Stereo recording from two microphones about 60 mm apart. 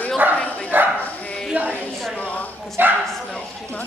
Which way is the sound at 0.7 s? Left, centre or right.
Right.